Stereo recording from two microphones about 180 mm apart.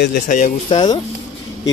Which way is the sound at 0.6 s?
25° left (ahead or behind).